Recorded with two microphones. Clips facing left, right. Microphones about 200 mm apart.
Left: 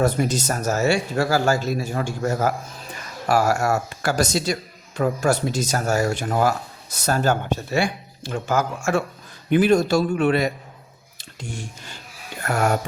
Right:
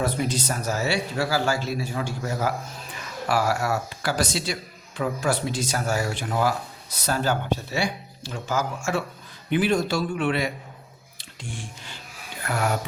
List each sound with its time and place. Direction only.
0.0 s speech: 45° left (ahead or behind)
11.2 s a sound: 40° left (ahead or behind)
12.4 s music: 45° left (ahead or behind)